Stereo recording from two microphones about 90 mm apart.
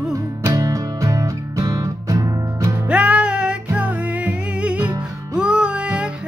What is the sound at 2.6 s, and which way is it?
Music, 15° right (ahead or behind).